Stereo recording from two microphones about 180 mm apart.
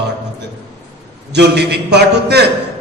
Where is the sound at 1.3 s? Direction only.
65° right (ahead or behind).